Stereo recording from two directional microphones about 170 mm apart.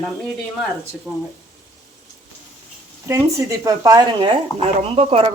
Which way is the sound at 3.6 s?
20° right (ahead or behind).